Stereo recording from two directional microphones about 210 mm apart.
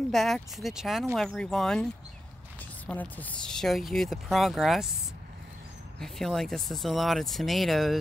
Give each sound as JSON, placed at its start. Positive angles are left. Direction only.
{"t": 0.1, "sound": "speech", "side_deg": 0}
{"t": 2.9, "sound": "speech", "side_deg": 5}
{"t": 5.9, "sound": "speech", "side_deg": 0}